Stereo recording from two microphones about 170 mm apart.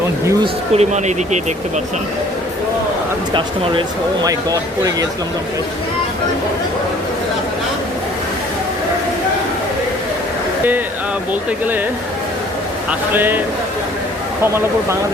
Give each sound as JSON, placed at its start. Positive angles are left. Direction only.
{"t": 0.4, "sound": "speech", "side_deg": -40}
{"t": 3.3, "sound": "speech", "side_deg": -25}
{"t": 13.1, "sound": "speech", "side_deg": -10}
{"t": 14.4, "sound": "speech", "side_deg": -15}